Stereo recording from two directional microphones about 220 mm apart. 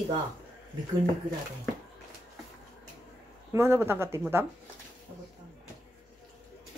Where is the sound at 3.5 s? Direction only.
10° right (ahead or behind).